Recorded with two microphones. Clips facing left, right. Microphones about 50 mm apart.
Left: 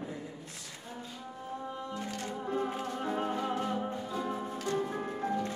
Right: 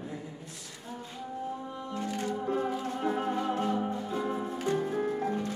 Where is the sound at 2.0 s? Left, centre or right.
Right.